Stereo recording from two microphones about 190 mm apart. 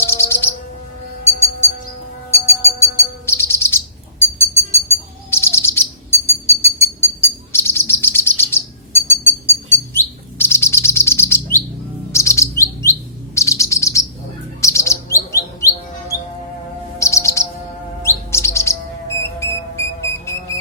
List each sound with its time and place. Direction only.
0.0 s chirp: 15° left (ahead or behind)
2.5 s bird: 15° left (ahead or behind)
12.1 s chirp: 15° left (ahead or behind)
14.6 s bird: 15° left (ahead or behind)
17.0 s chirp: 15° left (ahead or behind)
19.2 s a sound: 15° left (ahead or behind)